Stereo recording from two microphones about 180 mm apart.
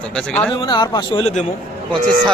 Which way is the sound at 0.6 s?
25° left (ahead or behind).